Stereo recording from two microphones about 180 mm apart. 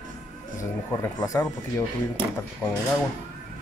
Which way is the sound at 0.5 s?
15° left (ahead or behind).